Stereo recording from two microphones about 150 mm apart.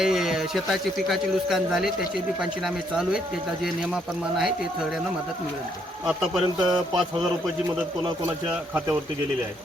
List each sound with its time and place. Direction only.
0.0 s speech: centre (ahead or behind)
6.1 s speech: 5° right (ahead or behind)
6.6 s a man's voice: 30° right (ahead or behind)